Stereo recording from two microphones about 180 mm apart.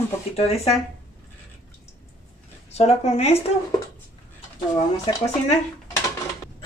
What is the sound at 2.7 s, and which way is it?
Speech, 35° left (ahead or behind).